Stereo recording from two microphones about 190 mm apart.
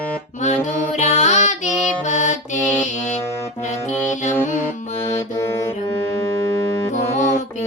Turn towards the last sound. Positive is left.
turn(degrees=15)  # may be behind; listen again after turning